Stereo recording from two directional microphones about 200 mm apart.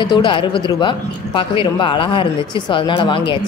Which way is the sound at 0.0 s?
25° left (ahead or behind).